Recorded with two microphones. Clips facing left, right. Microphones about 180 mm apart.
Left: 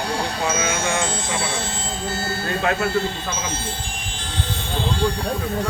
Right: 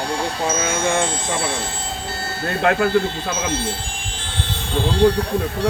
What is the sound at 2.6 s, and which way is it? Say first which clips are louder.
Speech: right 5 dB; 55° right (ahead or behind).